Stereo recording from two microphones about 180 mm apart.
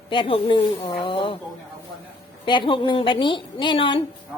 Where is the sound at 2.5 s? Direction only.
25° left (ahead or behind).